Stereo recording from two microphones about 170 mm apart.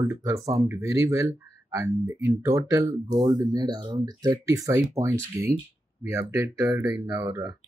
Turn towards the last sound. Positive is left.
turn(degrees=-20)  # may be behind; listen again after turning